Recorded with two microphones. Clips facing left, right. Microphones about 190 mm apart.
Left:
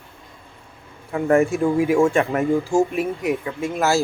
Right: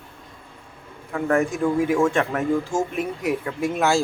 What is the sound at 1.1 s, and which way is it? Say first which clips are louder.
Speech: left 4 dB; 15° left (ahead or behind).